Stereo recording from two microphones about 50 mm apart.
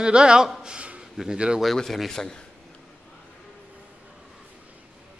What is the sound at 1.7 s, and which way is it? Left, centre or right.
Speech, centre.